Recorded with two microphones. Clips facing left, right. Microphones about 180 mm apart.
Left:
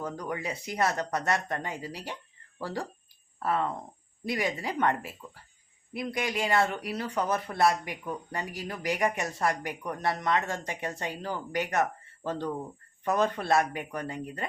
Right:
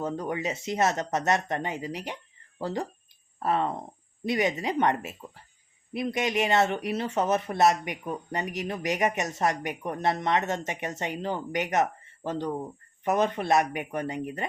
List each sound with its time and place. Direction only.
0.0 s speech: 25° right (ahead or behind)